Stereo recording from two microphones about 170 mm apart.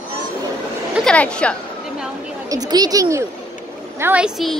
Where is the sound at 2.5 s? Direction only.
25° right (ahead or behind).